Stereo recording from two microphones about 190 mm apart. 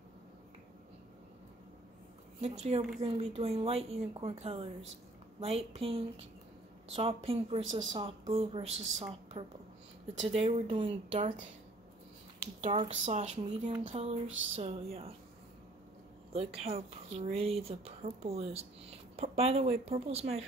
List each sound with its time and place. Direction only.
2.4 s a woman's voice: 35° right (ahead or behind)
12.5 s speech: 30° right (ahead or behind)
16.3 s speech: 30° right (ahead or behind)